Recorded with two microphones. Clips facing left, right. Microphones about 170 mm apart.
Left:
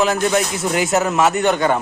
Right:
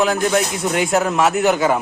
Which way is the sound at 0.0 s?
Centre (ahead or behind).